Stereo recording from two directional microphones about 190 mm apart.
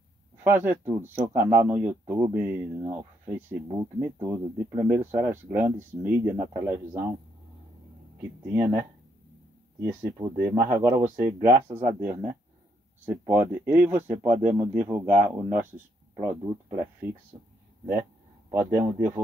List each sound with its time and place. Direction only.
0.4 s speech: 10° right (ahead or behind)
8.5 s speech: 15° right (ahead or behind)
18.5 s speech: 15° right (ahead or behind)